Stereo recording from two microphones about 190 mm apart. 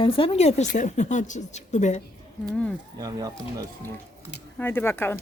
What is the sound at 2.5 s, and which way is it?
Speech, 5° left (ahead or behind).